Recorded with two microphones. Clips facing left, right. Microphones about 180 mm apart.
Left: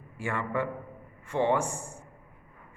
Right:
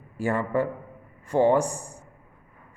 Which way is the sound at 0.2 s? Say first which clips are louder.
Right 6 dB; 40° right (ahead or behind).